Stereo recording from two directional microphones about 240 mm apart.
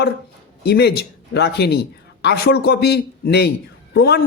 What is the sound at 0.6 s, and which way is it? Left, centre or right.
A man's voice, left.